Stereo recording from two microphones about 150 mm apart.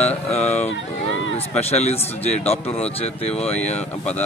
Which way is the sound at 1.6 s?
45° left (ahead or behind).